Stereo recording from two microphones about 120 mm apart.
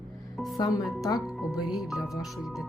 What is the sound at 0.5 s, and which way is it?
Speech, 30° left (ahead or behind).